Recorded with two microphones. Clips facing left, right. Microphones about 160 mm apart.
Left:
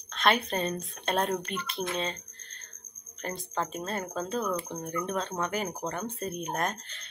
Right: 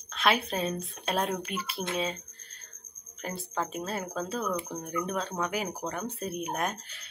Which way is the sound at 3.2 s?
5° right (ahead or behind).